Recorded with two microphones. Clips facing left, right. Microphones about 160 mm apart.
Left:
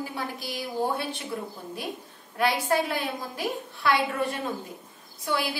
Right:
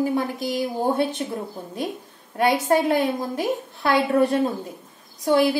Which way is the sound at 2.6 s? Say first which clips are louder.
Right 7 dB; 45° right (ahead or behind).